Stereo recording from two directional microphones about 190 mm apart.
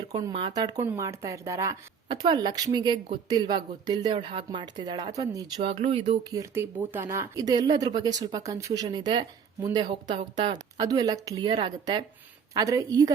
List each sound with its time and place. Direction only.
0.2 s speech: 25° right (ahead or behind)
5.5 s speech: 35° right (ahead or behind)
6.3 s speech: 15° right (ahead or behind)